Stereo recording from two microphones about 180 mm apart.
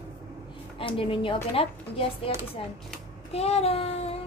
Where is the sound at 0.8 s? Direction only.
30° left (ahead or behind).